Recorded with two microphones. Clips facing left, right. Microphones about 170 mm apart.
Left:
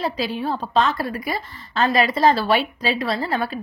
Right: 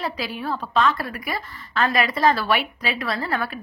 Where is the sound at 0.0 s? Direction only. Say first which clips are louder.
Left 4 dB; 25° left (ahead or behind).